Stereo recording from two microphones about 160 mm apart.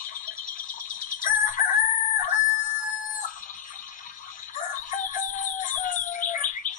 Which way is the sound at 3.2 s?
55° left (ahead or behind).